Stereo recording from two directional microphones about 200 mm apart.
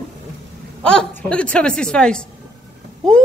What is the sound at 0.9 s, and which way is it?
A woman's voice, 5° left (ahead or behind).